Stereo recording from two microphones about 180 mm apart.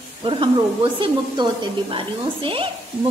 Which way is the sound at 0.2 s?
30° right (ahead or behind).